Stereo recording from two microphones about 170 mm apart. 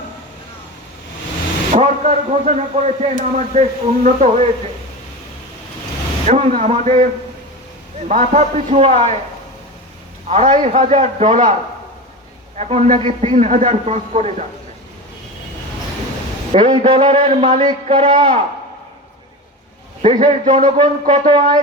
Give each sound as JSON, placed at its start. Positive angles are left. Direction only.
{"t": 1.7, "sound": "a man's voice", "side_deg": -45}
{"t": 6.2, "sound": "a man's voice", "side_deg": -35}
{"t": 10.2, "sound": "a man's voice", "side_deg": -40}
{"t": 12.5, "sound": "a man's voice", "side_deg": -40}
{"t": 16.5, "sound": "a man's voice", "side_deg": -35}
{"t": 20.0, "sound": "a man's voice", "side_deg": -45}